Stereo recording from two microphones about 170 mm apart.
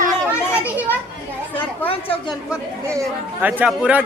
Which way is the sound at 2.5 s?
15° right (ahead or behind).